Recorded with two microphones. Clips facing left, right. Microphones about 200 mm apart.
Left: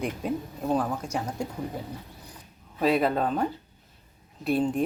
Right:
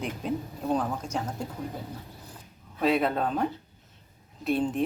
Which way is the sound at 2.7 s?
Centre (ahead or behind).